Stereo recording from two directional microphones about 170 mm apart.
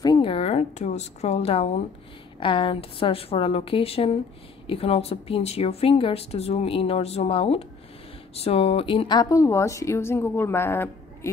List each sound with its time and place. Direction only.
0.0 s a woman's voice: 30° left (ahead or behind)